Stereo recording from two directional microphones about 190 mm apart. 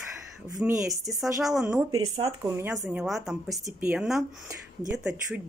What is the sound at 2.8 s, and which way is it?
Speech, 5° right (ahead or behind).